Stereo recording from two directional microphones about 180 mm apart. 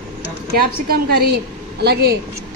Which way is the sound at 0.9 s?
65° right (ahead or behind).